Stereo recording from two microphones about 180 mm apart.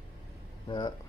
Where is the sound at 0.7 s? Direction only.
25° left (ahead or behind).